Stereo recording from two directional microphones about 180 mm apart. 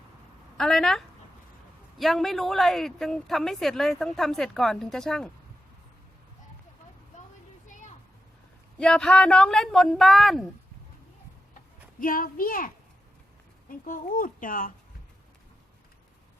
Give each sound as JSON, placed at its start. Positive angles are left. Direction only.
{"t": 0.5, "sound": "speech", "side_deg": 5}
{"t": 8.8, "sound": "speech", "side_deg": 5}
{"t": 11.9, "sound": "speech", "side_deg": 50}
{"t": 13.8, "sound": "speech", "side_deg": 50}